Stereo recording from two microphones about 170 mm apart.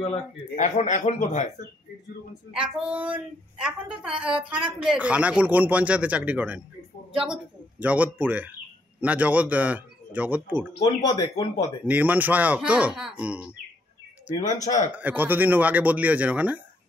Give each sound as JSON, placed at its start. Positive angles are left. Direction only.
{"t": 0.1, "sound": "speech", "side_deg": 45}
{"t": 2.7, "sound": "a woman's voice", "side_deg": -10}
{"t": 11.1, "sound": "speech", "side_deg": 25}
{"t": 11.8, "sound": "speech", "side_deg": -10}
{"t": 14.4, "sound": "speech", "side_deg": 45}
{"t": 14.9, "sound": "speech", "side_deg": -10}